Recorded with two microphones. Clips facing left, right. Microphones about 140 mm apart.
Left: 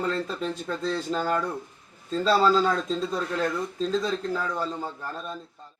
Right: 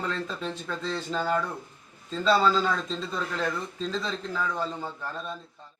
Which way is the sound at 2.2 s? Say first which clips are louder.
Left 2 dB; 40° left (ahead or behind).